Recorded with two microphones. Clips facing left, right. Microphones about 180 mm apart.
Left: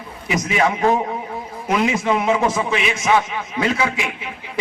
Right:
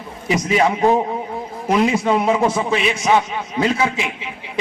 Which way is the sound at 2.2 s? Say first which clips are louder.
Right 1 dB; 30° right (ahead or behind).